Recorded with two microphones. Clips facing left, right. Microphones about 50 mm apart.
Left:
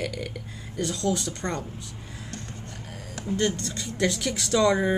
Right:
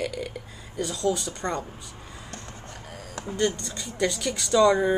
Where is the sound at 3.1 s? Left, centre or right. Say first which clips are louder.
Left 4 dB; right.